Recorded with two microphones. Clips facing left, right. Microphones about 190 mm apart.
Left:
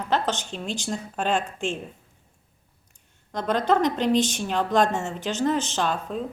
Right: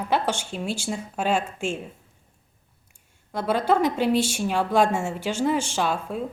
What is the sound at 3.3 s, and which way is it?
A woman's voice, 10° right (ahead or behind).